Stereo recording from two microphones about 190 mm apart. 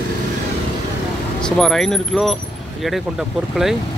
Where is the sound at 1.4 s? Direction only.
5° left (ahead or behind).